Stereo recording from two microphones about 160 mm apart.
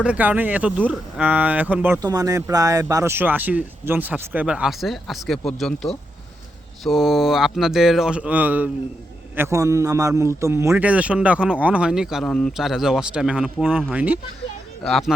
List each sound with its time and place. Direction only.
0.0 s a man's voice: 10° right (ahead or behind)
2.0 s a man's voice: 20° right (ahead or behind)
14.8 s speech: centre (ahead or behind)